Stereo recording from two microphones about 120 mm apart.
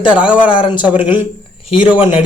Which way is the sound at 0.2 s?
10° right (ahead or behind).